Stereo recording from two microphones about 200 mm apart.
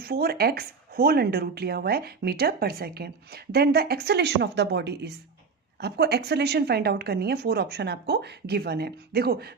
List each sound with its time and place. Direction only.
0.0 s speech: 50° right (ahead or behind)